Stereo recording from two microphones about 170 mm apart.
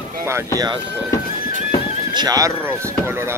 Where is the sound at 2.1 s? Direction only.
25° right (ahead or behind).